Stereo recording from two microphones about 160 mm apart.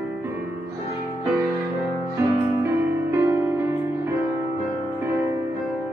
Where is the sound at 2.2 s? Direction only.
20° right (ahead or behind).